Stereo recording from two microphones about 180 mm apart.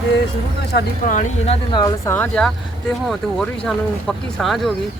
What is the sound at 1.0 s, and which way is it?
Speech, 45° left (ahead or behind).